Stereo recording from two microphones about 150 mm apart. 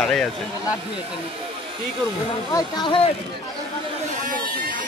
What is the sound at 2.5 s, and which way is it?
Speech, 30° left (ahead or behind).